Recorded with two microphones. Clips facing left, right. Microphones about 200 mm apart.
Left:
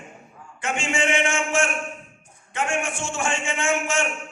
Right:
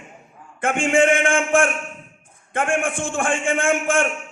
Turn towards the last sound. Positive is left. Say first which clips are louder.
# right 5 dB
turn(degrees=-55)  # may be behind; listen again after turning